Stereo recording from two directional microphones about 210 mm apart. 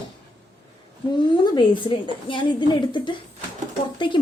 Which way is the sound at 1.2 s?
20° left (ahead or behind).